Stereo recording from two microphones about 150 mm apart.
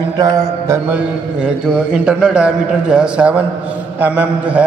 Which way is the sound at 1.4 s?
5° right (ahead or behind).